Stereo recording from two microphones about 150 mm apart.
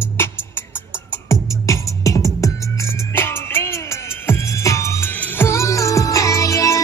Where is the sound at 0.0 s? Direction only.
15° left (ahead or behind).